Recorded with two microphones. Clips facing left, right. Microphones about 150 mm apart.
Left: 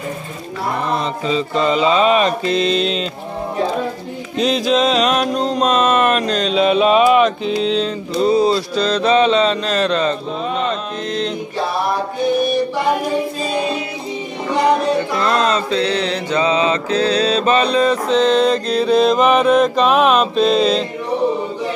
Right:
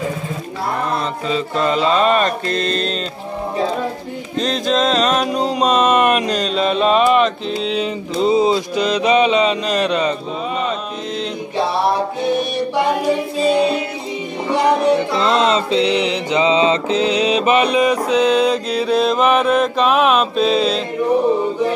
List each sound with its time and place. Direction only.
1.2 s mantra: centre (ahead or behind)
4.4 s mantra: 5° left (ahead or behind)
6.5 s mantra: 5° left (ahead or behind)
7.7 s mantra: 15° right (ahead or behind)
15.1 s mantra: 20° right (ahead or behind); by 20.8 s 5° right (ahead or behind)